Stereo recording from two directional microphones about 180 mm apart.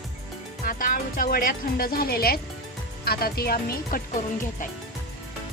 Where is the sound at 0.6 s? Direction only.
50° left (ahead or behind).